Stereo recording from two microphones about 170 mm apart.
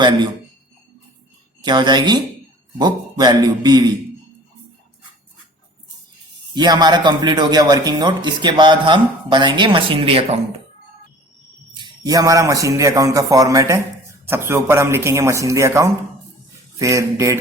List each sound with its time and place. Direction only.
1.6 s a man's voice: 25° right (ahead or behind)
6.5 s a man's voice: 25° right (ahead or behind)
11.8 s a man's voice: 20° right (ahead or behind)